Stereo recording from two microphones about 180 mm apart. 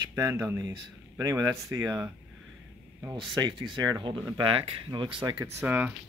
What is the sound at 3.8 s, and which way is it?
Speech, 25° right (ahead or behind).